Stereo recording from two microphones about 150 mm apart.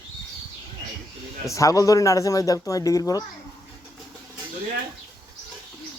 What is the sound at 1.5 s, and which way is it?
Speech, 20° left (ahead or behind).